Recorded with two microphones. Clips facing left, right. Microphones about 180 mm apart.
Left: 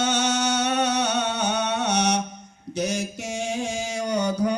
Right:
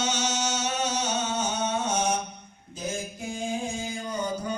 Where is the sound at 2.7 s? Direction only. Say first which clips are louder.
Left 7 dB; 80° left.